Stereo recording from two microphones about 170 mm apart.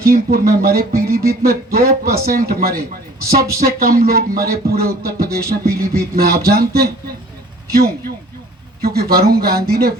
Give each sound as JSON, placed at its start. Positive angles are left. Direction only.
{"t": 0.0, "sound": "speech", "side_deg": -60}